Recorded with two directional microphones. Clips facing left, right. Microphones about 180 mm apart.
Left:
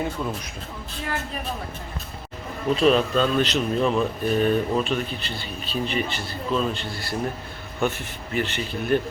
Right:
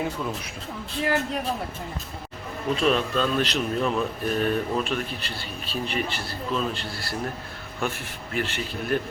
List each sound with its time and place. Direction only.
1.0 s speech: 75° right (ahead or behind)
2.8 s speech: centre (ahead or behind)